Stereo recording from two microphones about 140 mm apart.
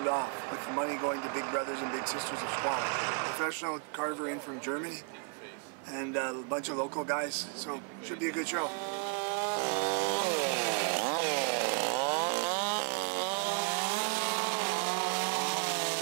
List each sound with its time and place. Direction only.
0.0 s a sound: 25° right (ahead or behind)
0.7 s speech: 25° right (ahead or behind)
9.1 s chainsaw: 10° right (ahead or behind)